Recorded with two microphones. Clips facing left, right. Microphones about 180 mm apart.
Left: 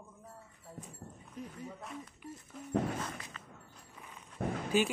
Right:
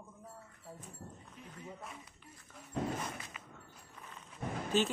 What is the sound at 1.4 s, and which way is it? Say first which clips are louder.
Speech: left 12 dB; 40° left (ahead or behind).